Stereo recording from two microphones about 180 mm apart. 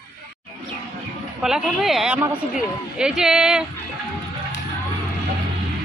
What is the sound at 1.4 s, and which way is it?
Speech, centre (ahead or behind).